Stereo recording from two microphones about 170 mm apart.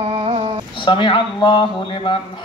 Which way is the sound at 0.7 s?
30° left (ahead or behind).